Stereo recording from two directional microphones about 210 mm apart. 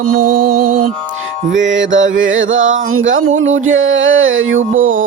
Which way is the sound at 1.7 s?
60° right (ahead or behind).